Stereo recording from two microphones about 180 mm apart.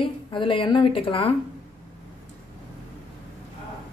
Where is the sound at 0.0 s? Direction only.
30° left (ahead or behind).